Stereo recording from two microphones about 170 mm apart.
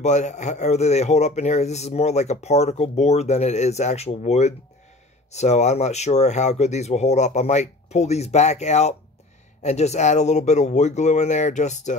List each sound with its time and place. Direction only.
0.0 s speech: 45° left (ahead or behind)